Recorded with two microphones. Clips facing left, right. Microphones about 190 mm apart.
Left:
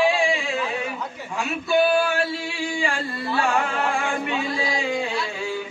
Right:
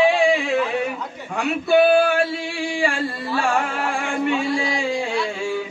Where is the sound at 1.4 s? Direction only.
60° right (ahead or behind).